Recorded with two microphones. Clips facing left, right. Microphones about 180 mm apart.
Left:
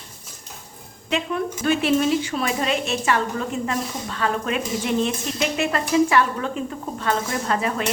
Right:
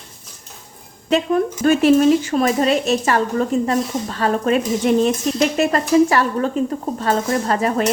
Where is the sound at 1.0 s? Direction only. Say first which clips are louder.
Right 7 dB; 40° right (ahead or behind).